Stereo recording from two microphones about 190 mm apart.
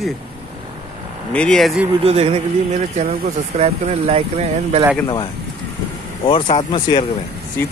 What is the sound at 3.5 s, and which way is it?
Speech, 35° right (ahead or behind).